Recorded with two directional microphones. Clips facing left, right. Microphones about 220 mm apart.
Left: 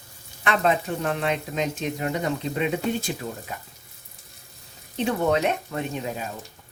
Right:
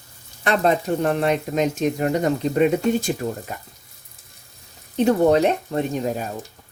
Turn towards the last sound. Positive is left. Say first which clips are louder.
# right 6 dB
turn(degrees=-40)  # may be behind; listen again after turning